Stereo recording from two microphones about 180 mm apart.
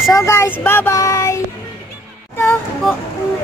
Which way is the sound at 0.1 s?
15° left (ahead or behind).